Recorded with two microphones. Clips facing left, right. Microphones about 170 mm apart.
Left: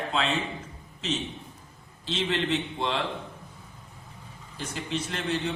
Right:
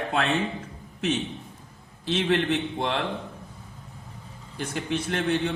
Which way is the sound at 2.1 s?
60° right (ahead or behind).